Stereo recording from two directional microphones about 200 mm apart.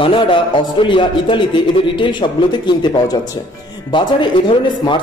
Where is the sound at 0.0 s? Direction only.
25° left (ahead or behind).